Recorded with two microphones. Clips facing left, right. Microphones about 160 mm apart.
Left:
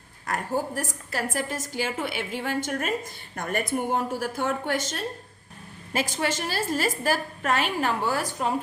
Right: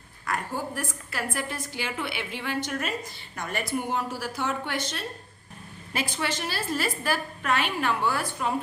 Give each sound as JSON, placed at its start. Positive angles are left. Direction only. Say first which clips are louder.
{"t": 0.3, "sound": "a woman's voice", "louder": "left 3 dB", "side_deg": 45}